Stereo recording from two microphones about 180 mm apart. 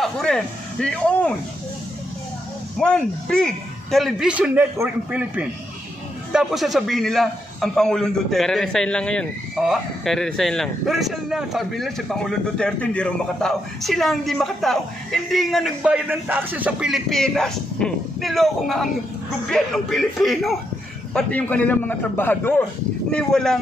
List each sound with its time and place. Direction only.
0.0 s speech: 5° left (ahead or behind)
2.8 s a man's voice: 5° left (ahead or behind)